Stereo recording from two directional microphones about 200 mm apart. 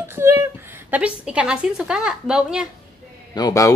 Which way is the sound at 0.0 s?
10° right (ahead or behind).